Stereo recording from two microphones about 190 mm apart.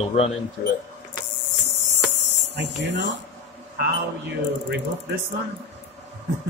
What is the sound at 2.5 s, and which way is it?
Speech, 60° right (ahead or behind).